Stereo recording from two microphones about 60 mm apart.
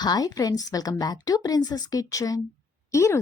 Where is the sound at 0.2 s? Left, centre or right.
Left.